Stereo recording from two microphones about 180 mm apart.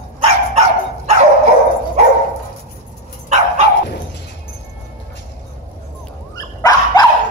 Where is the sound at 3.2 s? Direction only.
40° right (ahead or behind).